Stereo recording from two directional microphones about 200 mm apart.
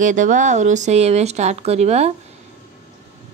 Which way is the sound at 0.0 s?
40° right (ahead or behind).